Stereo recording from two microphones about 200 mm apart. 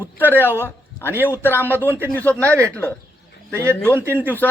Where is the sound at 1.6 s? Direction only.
10° right (ahead or behind).